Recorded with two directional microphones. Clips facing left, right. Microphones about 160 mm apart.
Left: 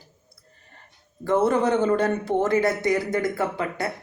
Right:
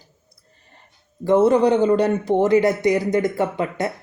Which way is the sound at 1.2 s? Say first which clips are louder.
Right 5 dB; 20° right (ahead or behind).